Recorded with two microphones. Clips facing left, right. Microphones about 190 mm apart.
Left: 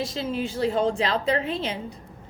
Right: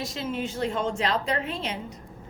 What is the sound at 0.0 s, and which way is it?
A woman's voice, 30° left (ahead or behind).